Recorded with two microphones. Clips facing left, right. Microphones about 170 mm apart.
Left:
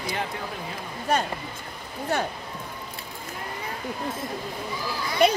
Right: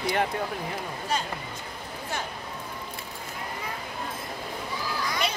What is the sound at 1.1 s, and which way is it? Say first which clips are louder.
Speech: left 6 dB; 55° left (ahead or behind).